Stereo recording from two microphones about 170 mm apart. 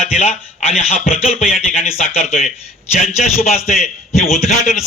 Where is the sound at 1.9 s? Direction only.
35° left (ahead or behind).